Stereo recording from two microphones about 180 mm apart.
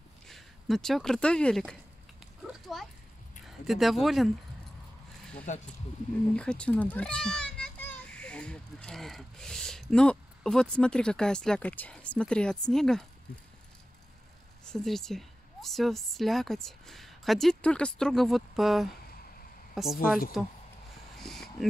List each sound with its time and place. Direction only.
0.3 s speech: centre (ahead or behind)
2.6 s a sound: centre (ahead or behind)
3.4 s speech: centre (ahead or behind)
5.5 s speech: 45° left (ahead or behind)
6.3 s a child's voice: 5° left (ahead or behind)
14.6 s a woman's voice: 5° left (ahead or behind)
21.2 s a sound: centre (ahead or behind)